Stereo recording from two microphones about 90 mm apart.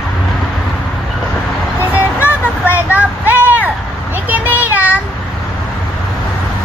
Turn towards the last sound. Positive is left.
turn(degrees=-20)  # may be behind; listen again after turning